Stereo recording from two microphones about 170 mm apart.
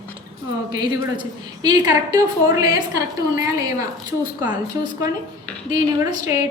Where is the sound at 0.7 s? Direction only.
20° right (ahead or behind).